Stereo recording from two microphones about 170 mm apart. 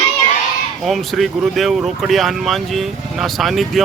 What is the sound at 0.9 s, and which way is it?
Speech, centre (ahead or behind).